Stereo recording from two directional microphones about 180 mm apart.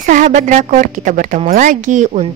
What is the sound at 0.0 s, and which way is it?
A woman's voice, 45° right (ahead or behind).